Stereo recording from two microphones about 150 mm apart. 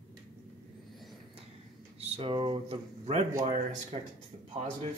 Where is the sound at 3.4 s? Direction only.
55° right (ahead or behind).